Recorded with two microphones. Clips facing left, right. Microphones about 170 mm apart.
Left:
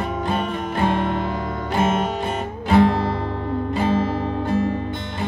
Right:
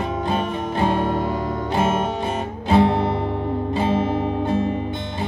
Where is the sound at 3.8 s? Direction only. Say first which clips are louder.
Even; 20° right (ahead or behind).